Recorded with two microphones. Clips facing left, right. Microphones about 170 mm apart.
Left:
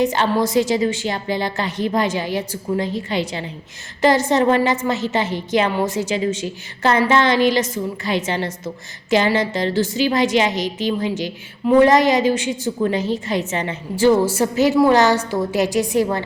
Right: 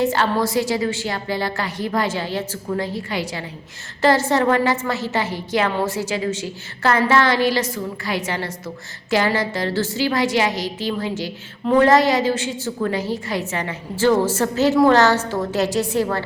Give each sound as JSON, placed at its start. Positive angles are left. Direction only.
{"t": 0.0, "sound": "a woman's voice", "side_deg": 20}